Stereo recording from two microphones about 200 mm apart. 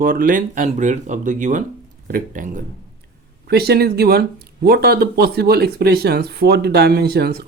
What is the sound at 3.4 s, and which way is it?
Speech, 55° right (ahead or behind).